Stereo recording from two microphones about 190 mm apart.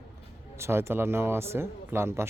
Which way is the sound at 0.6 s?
15° right (ahead or behind).